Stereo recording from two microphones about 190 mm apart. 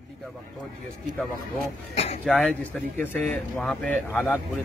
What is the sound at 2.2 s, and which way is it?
A man's voice, 5° left (ahead or behind).